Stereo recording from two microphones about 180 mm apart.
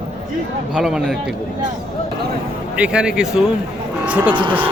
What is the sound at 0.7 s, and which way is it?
Speech, 5° right (ahead or behind).